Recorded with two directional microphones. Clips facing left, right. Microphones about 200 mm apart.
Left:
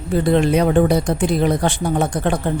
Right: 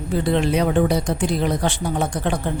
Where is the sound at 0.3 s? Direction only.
50° left (ahead or behind).